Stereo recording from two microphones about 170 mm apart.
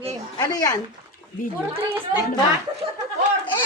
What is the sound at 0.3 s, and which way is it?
Speech, 20° left (ahead or behind).